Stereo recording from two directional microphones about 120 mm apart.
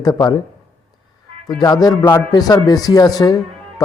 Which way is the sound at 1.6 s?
35° left (ahead or behind).